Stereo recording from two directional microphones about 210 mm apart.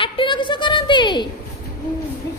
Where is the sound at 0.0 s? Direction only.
25° left (ahead or behind).